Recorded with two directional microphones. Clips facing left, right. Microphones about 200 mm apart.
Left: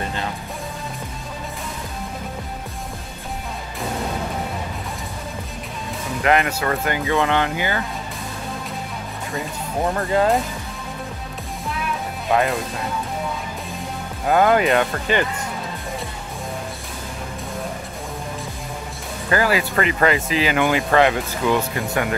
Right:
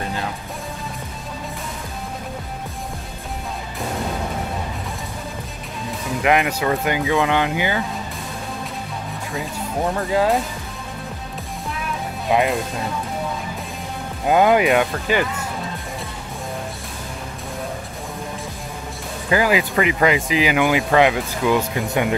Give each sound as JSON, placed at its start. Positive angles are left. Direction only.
{"t": 6.2, "sound": "speech", "side_deg": -10}
{"t": 9.3, "sound": "speech", "side_deg": 0}
{"t": 12.3, "sound": "speech", "side_deg": -15}
{"t": 14.2, "sound": "speech", "side_deg": -15}
{"t": 19.3, "sound": "speech", "side_deg": -15}